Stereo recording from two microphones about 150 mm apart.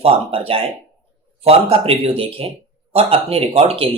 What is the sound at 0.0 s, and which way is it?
A man's voice, 40° right (ahead or behind).